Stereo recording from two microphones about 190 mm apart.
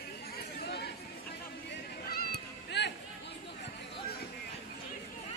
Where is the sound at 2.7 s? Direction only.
65° left (ahead or behind).